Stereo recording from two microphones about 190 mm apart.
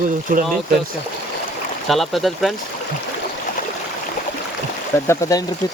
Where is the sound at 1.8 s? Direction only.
Centre (ahead or behind).